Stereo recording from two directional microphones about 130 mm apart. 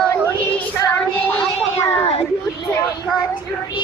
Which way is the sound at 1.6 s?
50° left (ahead or behind).